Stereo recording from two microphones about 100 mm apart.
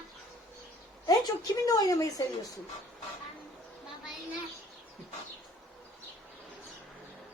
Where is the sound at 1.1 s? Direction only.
40° left (ahead or behind).